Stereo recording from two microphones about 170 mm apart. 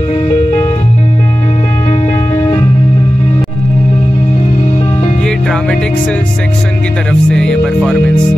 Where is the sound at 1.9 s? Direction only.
15° left (ahead or behind).